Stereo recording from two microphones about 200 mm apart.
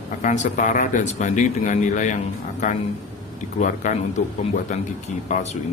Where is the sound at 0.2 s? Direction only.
40° left (ahead or behind).